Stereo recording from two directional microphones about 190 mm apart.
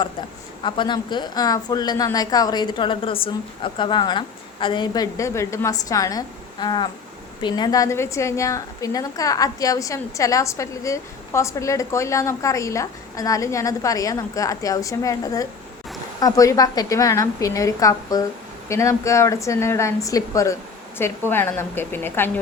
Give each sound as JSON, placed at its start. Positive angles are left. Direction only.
{"t": 0.6, "sound": "a woman's voice", "side_deg": 25}